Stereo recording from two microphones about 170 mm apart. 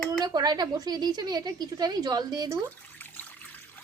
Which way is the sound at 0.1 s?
25° right (ahead or behind).